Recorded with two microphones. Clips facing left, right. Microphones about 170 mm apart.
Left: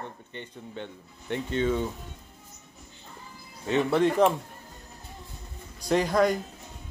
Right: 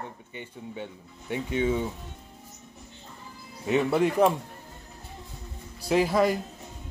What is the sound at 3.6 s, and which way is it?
Speech, 10° right (ahead or behind).